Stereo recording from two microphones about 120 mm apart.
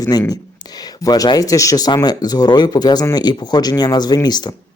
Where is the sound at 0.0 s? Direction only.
30° left (ahead or behind).